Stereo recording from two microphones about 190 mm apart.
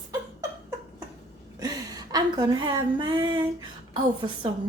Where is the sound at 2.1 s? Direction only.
20° right (ahead or behind).